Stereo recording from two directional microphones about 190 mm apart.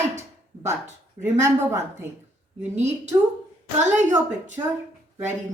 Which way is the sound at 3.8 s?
40° right (ahead or behind).